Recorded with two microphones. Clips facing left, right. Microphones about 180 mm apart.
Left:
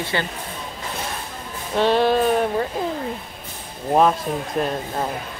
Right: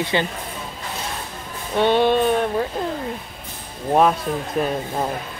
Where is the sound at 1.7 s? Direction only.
Centre (ahead or behind).